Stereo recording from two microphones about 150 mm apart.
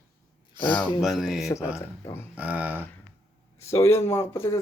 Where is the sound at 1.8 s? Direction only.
20° left (ahead or behind).